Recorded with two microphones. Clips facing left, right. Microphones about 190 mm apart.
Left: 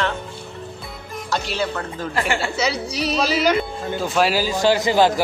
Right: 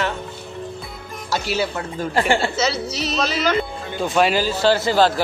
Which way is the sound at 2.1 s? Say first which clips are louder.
Right 5 dB; 30° right (ahead or behind).